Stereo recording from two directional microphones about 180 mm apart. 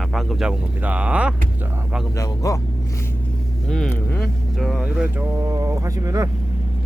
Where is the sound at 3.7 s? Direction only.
5° left (ahead or behind); by 6.3 s 15° right (ahead or behind).